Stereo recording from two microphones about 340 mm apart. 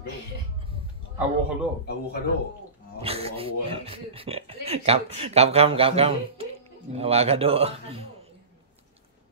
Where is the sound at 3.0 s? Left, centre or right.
Centre.